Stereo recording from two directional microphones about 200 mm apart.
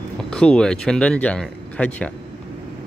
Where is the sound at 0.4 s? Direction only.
5° left (ahead or behind).